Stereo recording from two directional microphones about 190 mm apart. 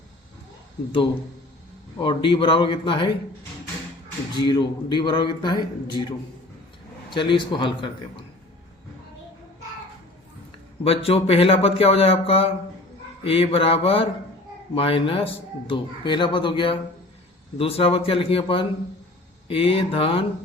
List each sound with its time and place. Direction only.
2.0 s a man's voice: 25° left (ahead or behind)
4.4 s a man's voice: 25° left (ahead or behind)
10.8 s a man's voice: 30° left (ahead or behind)